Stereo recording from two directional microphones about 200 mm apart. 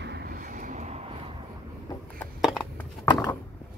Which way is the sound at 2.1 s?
5° left (ahead or behind).